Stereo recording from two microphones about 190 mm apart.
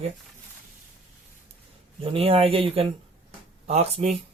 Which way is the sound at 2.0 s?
30° right (ahead or behind).